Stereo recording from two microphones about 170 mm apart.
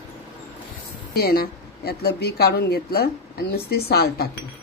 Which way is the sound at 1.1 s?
65° left (ahead or behind).